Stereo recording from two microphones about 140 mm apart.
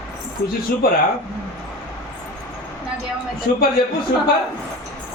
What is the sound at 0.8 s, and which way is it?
Speech, 90° left.